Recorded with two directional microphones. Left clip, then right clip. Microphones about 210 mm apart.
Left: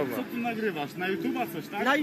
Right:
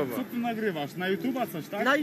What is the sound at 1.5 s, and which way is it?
Speech, centre (ahead or behind).